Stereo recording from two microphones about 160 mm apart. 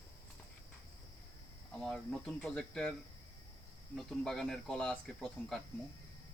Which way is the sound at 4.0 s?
Centre (ahead or behind).